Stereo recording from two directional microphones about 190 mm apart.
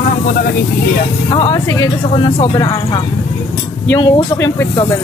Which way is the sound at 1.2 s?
25° left (ahead or behind).